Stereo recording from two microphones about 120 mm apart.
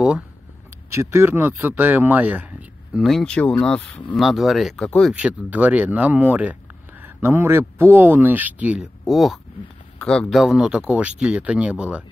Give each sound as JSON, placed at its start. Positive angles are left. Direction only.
{"t": 0.8, "sound": "speech", "side_deg": -25}
{"t": 2.9, "sound": "speech", "side_deg": 0}
{"t": 5.1, "sound": "speech", "side_deg": -10}
{"t": 9.0, "sound": "speech", "side_deg": 0}
{"t": 10.4, "sound": "speech", "side_deg": -5}